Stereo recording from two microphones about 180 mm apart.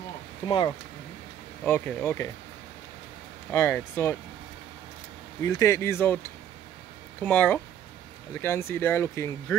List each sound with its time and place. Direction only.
0.5 s speech: 25° left (ahead or behind)
1.6 s speech: 10° left (ahead or behind)
3.5 s speech: 15° left (ahead or behind)
5.4 s speech: 15° left (ahead or behind)
7.2 s speech: 10° left (ahead or behind)